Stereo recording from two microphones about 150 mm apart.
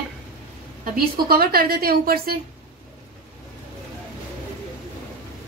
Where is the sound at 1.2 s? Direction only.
90° right.